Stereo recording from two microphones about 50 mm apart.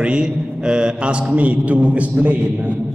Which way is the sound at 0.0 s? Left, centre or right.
Centre.